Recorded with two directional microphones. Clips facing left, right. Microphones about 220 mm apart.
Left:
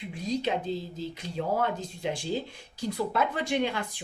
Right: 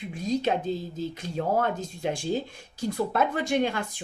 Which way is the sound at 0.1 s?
50° right (ahead or behind).